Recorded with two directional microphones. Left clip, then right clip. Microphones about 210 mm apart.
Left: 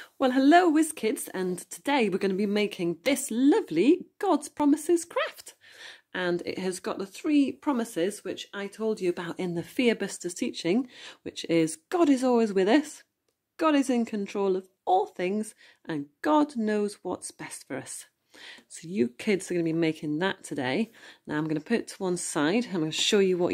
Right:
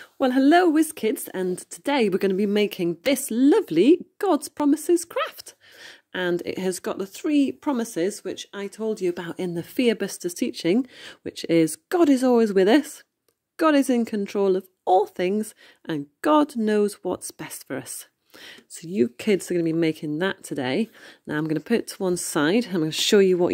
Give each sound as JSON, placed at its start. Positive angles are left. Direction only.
{"t": 0.0, "sound": "speech", "side_deg": -25}